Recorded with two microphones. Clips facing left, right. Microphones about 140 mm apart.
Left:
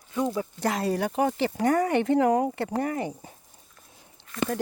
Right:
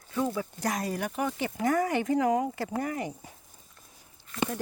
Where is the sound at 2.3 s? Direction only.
35° left (ahead or behind).